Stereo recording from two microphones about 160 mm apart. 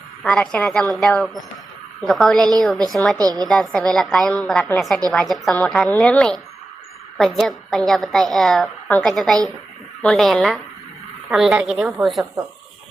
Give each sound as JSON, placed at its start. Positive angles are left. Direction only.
{"t": 0.2, "sound": "a woman's voice", "side_deg": 5}
{"t": 3.2, "sound": "a woman's voice", "side_deg": -25}
{"t": 3.5, "sound": "a woman's voice", "side_deg": 5}